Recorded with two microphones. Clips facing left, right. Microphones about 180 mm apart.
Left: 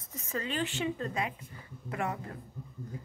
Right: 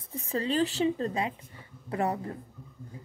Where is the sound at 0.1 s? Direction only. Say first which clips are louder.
Right 6 dB; 35° right (ahead or behind).